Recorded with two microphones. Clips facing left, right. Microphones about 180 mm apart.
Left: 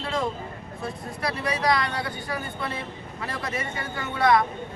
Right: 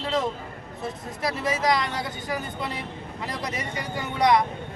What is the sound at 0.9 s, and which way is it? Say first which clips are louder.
Speech: right 1 dB; 20° right (ahead or behind).